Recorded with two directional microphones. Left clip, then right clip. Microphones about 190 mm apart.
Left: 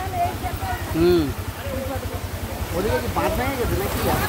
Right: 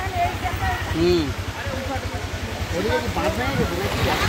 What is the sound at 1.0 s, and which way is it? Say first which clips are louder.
Speech: left 2 dB; 50° left (ahead or behind).